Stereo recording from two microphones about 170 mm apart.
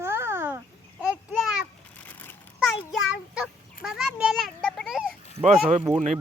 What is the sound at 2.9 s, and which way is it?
A child's voice, 5° right (ahead or behind).